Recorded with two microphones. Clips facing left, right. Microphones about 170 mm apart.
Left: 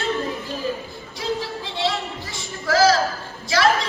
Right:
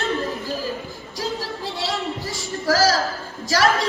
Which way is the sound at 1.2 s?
40° right (ahead or behind).